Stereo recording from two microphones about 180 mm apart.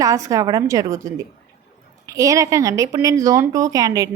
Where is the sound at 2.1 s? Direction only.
15° right (ahead or behind).